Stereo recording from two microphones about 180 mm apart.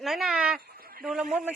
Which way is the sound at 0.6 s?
55° right (ahead or behind).